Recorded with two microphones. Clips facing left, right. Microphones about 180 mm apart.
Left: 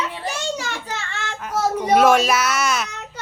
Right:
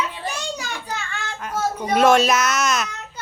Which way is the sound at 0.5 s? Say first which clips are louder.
Left 2 dB; 85° left.